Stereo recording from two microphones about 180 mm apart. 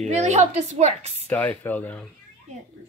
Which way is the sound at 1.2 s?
10° left (ahead or behind).